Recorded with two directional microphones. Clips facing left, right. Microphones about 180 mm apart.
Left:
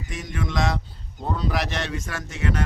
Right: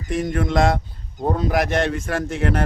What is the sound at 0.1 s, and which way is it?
Speech, 55° right (ahead or behind).